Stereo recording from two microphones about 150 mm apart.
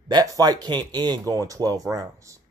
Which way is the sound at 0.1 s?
25° right (ahead or behind).